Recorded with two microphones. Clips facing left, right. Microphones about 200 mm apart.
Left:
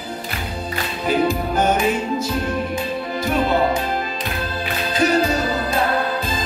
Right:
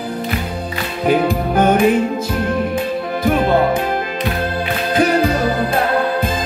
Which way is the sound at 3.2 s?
55° right (ahead or behind).